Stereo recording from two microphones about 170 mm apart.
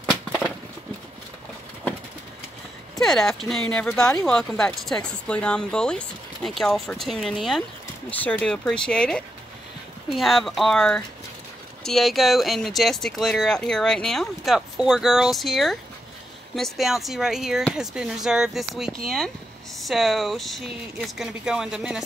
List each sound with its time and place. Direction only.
0.1 s a sound: 5° left (ahead or behind)
3.0 s speech: centre (ahead or behind)
4.0 s speech: 15° left (ahead or behind)
4.3 s speech: 5° left (ahead or behind)